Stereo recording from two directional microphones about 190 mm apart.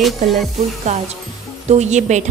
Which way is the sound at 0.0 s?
Centre (ahead or behind).